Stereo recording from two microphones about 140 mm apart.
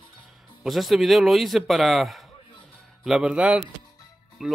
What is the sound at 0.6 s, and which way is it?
A man's voice, centre (ahead or behind).